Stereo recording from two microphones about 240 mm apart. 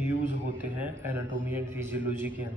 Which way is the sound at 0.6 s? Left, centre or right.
Centre.